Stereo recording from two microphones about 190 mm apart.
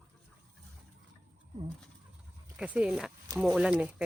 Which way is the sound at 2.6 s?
5° right (ahead or behind).